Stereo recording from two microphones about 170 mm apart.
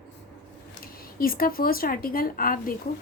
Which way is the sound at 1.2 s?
60° left (ahead or behind).